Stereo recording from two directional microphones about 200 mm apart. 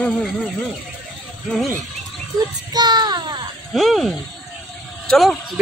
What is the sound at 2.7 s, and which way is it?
Speech, 20° right (ahead or behind).